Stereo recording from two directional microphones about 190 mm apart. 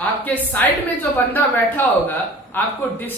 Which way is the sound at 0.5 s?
10° left (ahead or behind).